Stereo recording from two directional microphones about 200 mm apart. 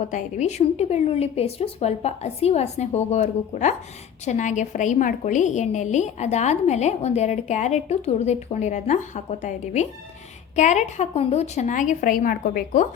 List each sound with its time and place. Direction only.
0.1 s a woman's voice: 35° left (ahead or behind)